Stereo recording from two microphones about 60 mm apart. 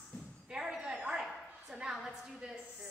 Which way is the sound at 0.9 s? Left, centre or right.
Centre.